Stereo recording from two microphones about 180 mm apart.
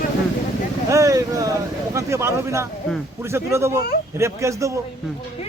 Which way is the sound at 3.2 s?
15° right (ahead or behind).